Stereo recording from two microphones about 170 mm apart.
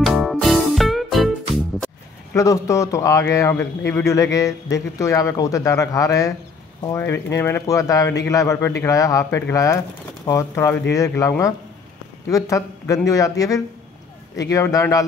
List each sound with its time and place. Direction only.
0.0 s music: centre (ahead or behind)
2.3 s a man's voice: 20° left (ahead or behind)